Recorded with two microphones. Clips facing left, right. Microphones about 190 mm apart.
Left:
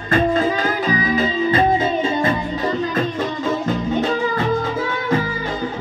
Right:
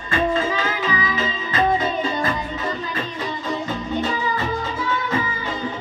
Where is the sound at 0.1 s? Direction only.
40° left (ahead or behind).